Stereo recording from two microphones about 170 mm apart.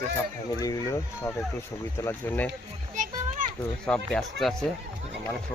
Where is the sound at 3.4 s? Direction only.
50° right (ahead or behind).